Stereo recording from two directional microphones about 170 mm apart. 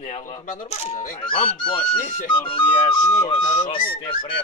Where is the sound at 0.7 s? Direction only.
40° left (ahead or behind).